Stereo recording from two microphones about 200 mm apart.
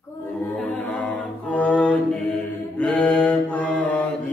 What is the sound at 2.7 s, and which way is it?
Mantra, 5° left (ahead or behind).